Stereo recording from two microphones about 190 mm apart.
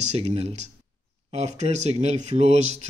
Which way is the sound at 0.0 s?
35° right (ahead or behind).